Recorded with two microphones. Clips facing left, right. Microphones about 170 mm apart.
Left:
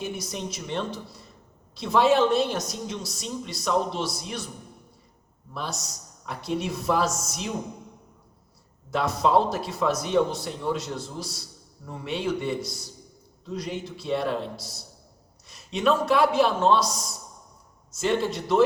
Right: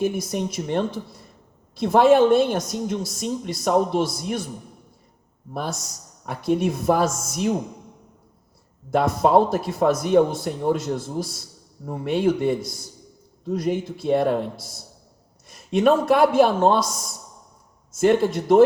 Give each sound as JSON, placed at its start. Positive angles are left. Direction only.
{"t": 0.0, "sound": "speech", "side_deg": -50}
{"t": 5.5, "sound": "speech", "side_deg": -50}
{"t": 8.9, "sound": "speech", "side_deg": -50}